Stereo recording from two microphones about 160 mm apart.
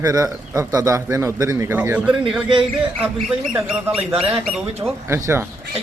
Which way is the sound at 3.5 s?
5° right (ahead or behind).